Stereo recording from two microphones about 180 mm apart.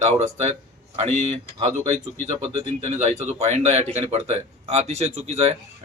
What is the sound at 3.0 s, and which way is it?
Speech, 40° right (ahead or behind).